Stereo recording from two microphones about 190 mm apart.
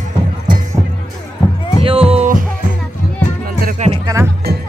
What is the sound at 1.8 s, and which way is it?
Music, 30° right (ahead or behind).